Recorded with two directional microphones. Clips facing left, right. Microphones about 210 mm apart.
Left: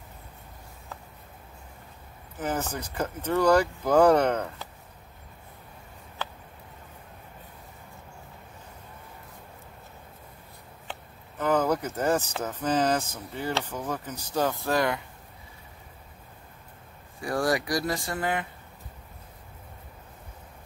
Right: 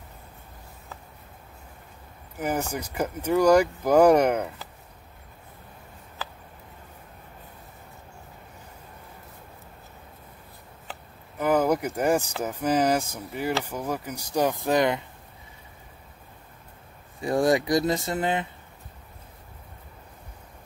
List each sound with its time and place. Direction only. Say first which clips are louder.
2.3 s speech: right 2 dB; 10° right (ahead or behind)
10.9 s chop: left 1 dB; 10° right (ahead or behind)
12.4 s speech: right 2 dB; 10° right (ahead or behind)
17.2 s speech: right 5 dB; 20° right (ahead or behind)